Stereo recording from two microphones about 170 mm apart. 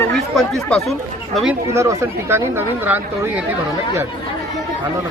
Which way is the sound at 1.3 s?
5° right (ahead or behind).